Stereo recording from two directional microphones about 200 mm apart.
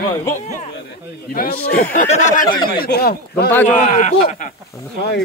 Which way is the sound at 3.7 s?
40° left (ahead or behind).